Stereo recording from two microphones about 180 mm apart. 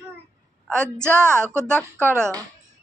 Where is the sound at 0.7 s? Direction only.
15° right (ahead or behind).